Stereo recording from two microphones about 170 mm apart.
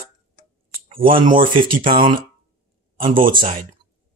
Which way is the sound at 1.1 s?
55° right (ahead or behind).